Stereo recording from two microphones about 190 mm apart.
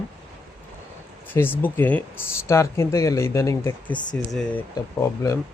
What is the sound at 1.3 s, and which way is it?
Speech, 10° left (ahead or behind).